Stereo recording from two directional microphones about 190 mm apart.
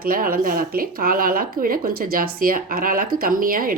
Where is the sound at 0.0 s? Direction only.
50° right (ahead or behind).